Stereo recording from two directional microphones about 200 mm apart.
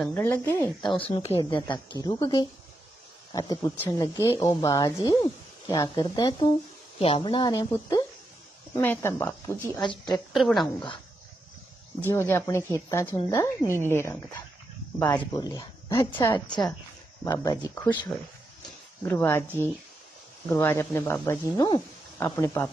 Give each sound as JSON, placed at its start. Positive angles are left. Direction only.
{"t": 0.0, "sound": "a woman's voice", "side_deg": 10}
{"t": 0.9, "sound": "a woman's voice", "side_deg": 25}
{"t": 3.3, "sound": "a woman's voice", "side_deg": 15}
{"t": 9.7, "sound": "a woman's voice", "side_deg": 20}
{"t": 10.3, "sound": "speech", "side_deg": 0}
{"t": 12.1, "sound": "a woman's voice", "side_deg": 10}
{"t": 15.3, "sound": "a woman's voice", "side_deg": 20}
{"t": 20.4, "sound": "a woman's voice", "side_deg": 15}